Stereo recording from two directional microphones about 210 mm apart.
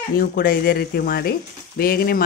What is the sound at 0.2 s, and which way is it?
Speech, 45° left (ahead or behind).